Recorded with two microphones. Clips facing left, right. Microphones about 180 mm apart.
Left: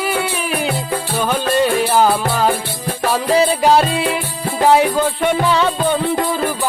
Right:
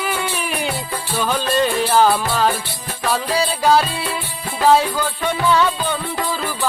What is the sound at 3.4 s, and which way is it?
Music, 20° left (ahead or behind).